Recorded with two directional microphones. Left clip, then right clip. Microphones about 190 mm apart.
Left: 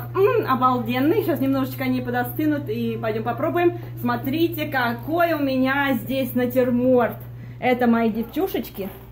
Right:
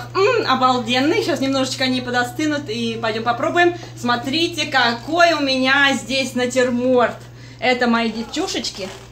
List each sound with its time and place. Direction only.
0.1 s speech: 5° left (ahead or behind)
7.6 s a woman's voice: 35° left (ahead or behind)